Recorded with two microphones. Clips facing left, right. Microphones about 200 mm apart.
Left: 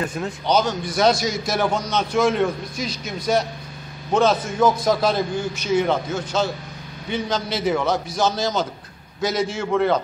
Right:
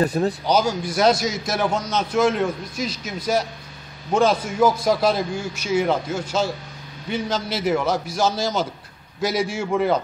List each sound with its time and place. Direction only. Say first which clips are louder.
0.0 s speech: right 6 dB; 35° right (ahead or behind)
0.5 s a man's voice: even; 10° right (ahead or behind)